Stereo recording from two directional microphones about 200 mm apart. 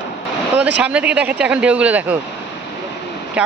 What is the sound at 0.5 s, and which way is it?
Speech, 5° right (ahead or behind).